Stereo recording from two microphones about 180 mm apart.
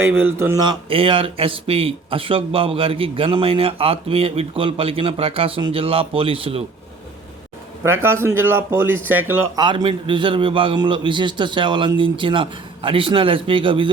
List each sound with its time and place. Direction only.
0.0 s speech: 10° right (ahead or behind)
0.6 s speech: 25° right (ahead or behind)
7.9 s speech: 15° right (ahead or behind)
9.6 s a man's voice: 25° right (ahead or behind)